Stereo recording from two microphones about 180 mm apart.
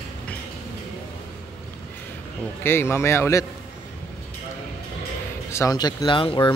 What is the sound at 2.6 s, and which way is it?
Speech, 15° left (ahead or behind).